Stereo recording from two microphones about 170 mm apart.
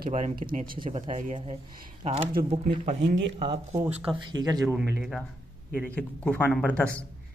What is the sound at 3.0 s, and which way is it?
Speech, 90° right.